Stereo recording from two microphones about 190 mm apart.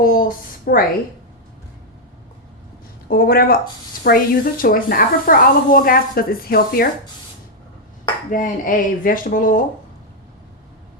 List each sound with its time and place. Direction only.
0.0 s a woman's voice: 50° left (ahead or behind)
3.1 s a woman's voice: 50° left (ahead or behind)
8.3 s a woman's voice: 45° left (ahead or behind)